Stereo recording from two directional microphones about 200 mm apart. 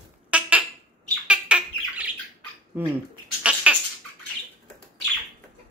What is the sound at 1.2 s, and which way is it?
Bird, 5° right (ahead or behind).